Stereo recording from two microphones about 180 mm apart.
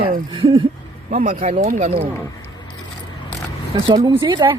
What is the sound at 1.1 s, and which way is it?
Speech, 50° right (ahead or behind).